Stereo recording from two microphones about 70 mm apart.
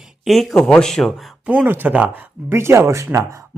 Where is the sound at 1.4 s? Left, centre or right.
Centre.